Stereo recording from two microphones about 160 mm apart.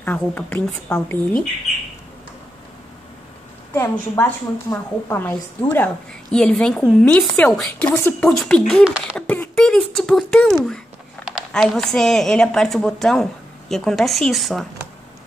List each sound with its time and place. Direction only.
0.0 s a woman's voice: 10° left (ahead or behind)
3.7 s a woman's voice: 15° left (ahead or behind)
7.9 s a woman's voice: 15° left (ahead or behind)